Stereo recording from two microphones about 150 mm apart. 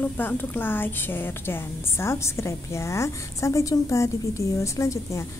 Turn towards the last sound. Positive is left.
turn(degrees=20)  # may be behind; listen again after turning